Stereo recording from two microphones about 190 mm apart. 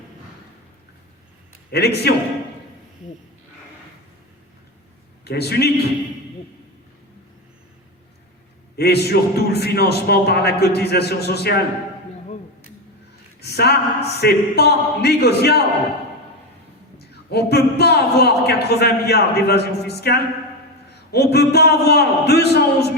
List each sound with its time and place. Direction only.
1.7 s a man's voice: 60° left (ahead or behind)
5.2 s a man's voice: 60° left (ahead or behind)
8.7 s a man's voice: 60° left (ahead or behind)
13.4 s a man's voice: 60° left (ahead or behind)
17.0 s a man's voice: 60° left (ahead or behind)